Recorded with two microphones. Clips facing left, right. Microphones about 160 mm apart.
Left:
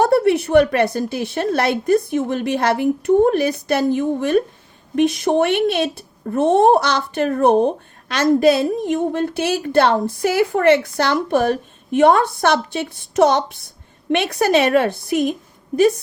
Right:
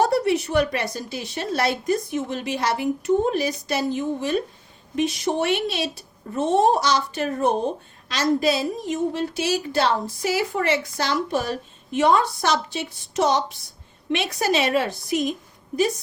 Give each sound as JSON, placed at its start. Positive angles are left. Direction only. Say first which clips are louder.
{"t": 0.0, "sound": "speech", "louder": "left 5 dB", "side_deg": 55}